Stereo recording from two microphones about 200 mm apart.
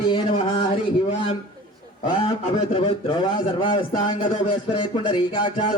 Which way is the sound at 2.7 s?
25° left (ahead or behind).